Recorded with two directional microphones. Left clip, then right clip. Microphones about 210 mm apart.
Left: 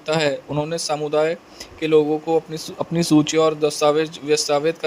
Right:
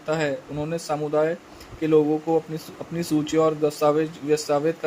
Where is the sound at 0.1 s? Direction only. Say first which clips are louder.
Left 5 dB; 45° left (ahead or behind).